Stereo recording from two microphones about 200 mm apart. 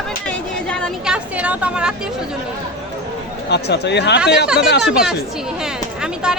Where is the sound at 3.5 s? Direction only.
55° left (ahead or behind).